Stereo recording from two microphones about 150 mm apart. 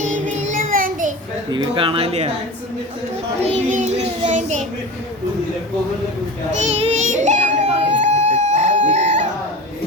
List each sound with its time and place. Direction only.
0.0 s child singing: 55° right (ahead or behind)
1.5 s speech: 30° right (ahead or behind)
3.4 s child singing: 50° right (ahead or behind)
6.7 s child singing: 45° right (ahead or behind)
7.0 s children playing: 55° right (ahead or behind)